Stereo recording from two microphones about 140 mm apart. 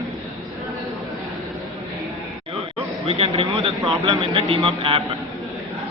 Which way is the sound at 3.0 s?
40° right (ahead or behind).